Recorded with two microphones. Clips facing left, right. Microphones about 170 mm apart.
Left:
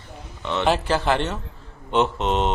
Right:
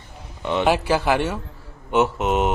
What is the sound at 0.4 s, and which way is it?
Speech, 10° right (ahead or behind).